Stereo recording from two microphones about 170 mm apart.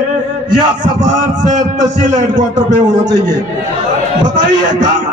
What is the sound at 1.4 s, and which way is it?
A man's voice, 45° right (ahead or behind).